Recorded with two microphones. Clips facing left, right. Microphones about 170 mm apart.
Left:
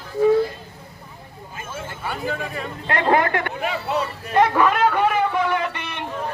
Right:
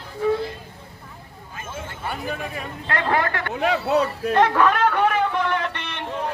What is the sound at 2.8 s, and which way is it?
Speech, 20° left (ahead or behind).